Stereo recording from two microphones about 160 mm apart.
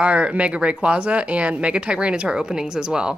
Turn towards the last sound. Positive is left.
turn(degrees=-5)  # may be behind; listen again after turning